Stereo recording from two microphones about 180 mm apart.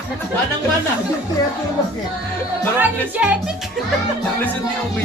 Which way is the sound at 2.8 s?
10° right (ahead or behind).